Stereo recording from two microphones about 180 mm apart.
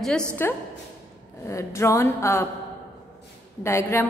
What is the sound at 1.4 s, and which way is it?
A woman's voice, 15° left (ahead or behind).